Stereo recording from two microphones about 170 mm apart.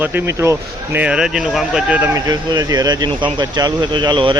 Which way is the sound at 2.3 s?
25° right (ahead or behind).